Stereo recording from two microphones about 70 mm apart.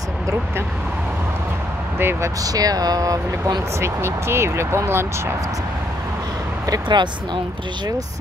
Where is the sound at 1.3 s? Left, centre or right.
Right.